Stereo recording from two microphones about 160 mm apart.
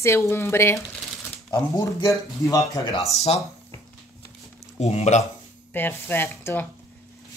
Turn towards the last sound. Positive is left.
turn(degrees=15)  # may be behind; listen again after turning